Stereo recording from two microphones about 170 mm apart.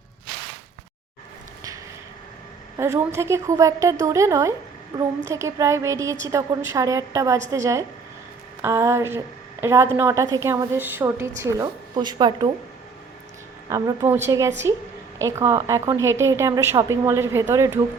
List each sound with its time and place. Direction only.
2.7 s a woman's voice: 15° right (ahead or behind)
13.7 s a woman's voice: 20° right (ahead or behind)